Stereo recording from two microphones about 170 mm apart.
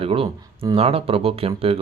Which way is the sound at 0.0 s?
35° right (ahead or behind).